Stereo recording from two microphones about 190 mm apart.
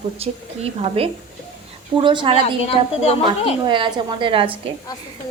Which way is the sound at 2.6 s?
30° left (ahead or behind).